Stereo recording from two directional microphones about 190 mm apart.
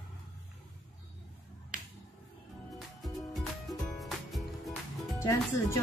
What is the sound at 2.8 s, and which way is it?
Music, centre (ahead or behind).